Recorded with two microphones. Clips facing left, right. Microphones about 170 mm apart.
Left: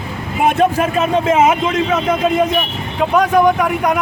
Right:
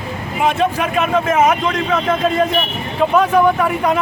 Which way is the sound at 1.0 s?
30° left (ahead or behind).